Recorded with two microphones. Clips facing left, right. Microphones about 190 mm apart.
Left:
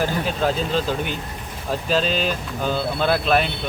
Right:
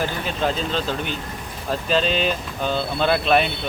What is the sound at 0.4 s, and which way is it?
Speech, 10° left (ahead or behind).